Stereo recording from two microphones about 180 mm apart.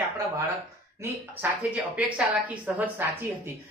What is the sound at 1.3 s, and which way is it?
A woman's voice, 5° right (ahead or behind).